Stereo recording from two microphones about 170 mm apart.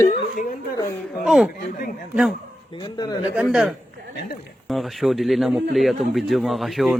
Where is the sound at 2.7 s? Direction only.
25° left (ahead or behind).